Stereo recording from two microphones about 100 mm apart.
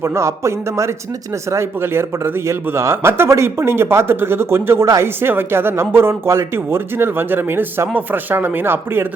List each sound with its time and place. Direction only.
0.0 s a man's voice: 25° right (ahead or behind)